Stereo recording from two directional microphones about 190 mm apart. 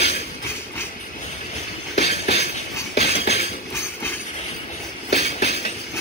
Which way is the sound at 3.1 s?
60° left (ahead or behind).